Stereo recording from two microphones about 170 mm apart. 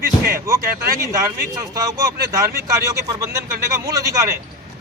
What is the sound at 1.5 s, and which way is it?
Speech, 20° right (ahead or behind).